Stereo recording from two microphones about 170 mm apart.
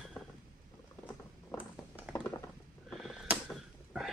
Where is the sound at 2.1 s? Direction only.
15° left (ahead or behind).